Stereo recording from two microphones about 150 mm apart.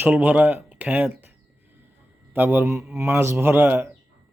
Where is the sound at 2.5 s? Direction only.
15° right (ahead or behind).